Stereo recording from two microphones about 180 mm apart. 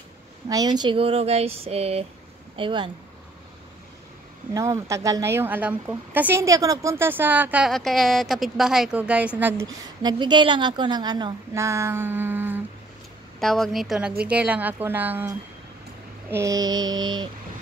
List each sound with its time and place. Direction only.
0.5 s speech: 20° right (ahead or behind)
2.5 s mantra: 25° right (ahead or behind)
4.6 s a woman's voice: 15° right (ahead or behind)
13.4 s a woman's voice: centre (ahead or behind)
16.3 s mantra: 15° right (ahead or behind)